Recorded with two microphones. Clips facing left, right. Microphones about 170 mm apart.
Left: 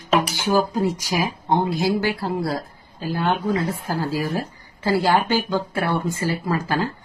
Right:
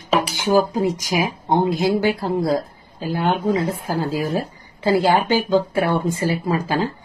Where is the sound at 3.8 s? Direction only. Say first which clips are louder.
Right 2 dB; 20° right (ahead or behind).